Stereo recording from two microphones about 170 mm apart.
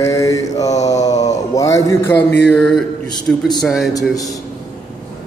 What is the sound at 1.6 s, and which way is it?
Mantra, 20° left (ahead or behind).